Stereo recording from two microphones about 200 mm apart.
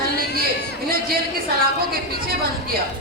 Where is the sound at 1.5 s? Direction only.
50° right (ahead or behind).